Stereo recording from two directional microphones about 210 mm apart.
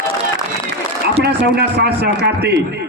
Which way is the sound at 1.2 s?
50° right (ahead or behind).